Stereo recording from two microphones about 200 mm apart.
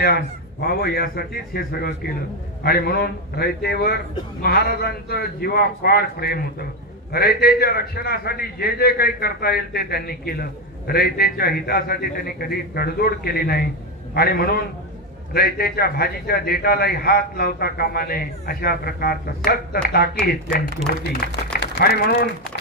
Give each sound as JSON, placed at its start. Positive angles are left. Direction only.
{"t": 0.0, "sound": "a man's voice", "side_deg": 50}